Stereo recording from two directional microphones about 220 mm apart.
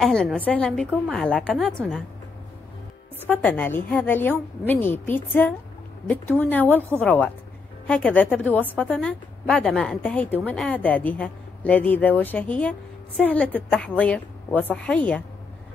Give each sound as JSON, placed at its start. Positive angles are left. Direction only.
{"t": 0.0, "sound": "a woman's voice", "side_deg": 0}
{"t": 3.3, "sound": "a woman's voice", "side_deg": 10}